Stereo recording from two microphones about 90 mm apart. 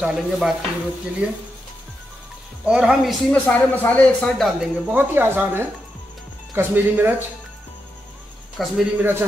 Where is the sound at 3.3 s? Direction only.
20° left (ahead or behind).